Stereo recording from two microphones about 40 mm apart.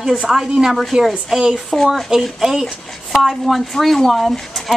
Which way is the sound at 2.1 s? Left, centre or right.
Centre.